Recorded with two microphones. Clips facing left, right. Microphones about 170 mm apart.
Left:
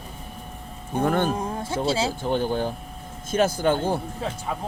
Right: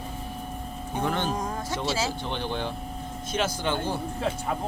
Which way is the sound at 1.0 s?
50° left (ahead or behind).